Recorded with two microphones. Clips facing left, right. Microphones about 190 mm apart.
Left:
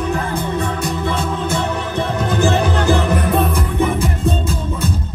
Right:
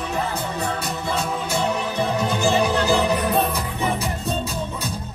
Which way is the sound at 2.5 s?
55° left (ahead or behind).